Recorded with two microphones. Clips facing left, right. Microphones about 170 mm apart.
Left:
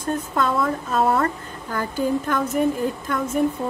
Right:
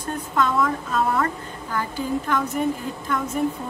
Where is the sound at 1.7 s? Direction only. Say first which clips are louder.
Left 3 dB; 45° left (ahead or behind).